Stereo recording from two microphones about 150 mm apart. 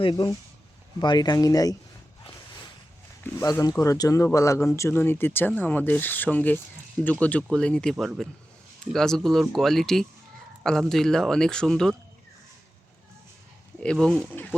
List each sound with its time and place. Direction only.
0.0 s speech: 30° left (ahead or behind)
3.3 s speech: 25° left (ahead or behind); by 11.9 s 5° left (ahead or behind)
13.8 s speech: 5° left (ahead or behind)